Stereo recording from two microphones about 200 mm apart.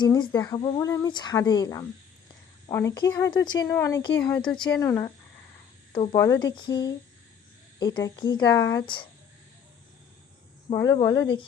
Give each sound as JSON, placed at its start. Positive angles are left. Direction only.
{"t": 0.0, "sound": "speech", "side_deg": 20}
{"t": 5.9, "sound": "speech", "side_deg": 30}
{"t": 6.1, "sound": "speech", "side_deg": 15}
{"t": 10.8, "sound": "speech", "side_deg": 20}